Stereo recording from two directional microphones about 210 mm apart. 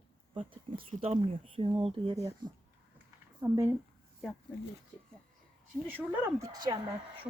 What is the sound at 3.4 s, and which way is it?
Speech, 15° right (ahead or behind).